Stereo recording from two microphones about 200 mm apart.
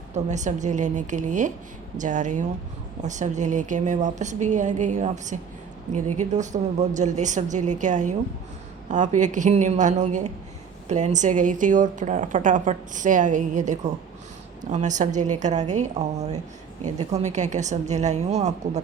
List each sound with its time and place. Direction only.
0.1 s a woman's voice: 35° right (ahead or behind)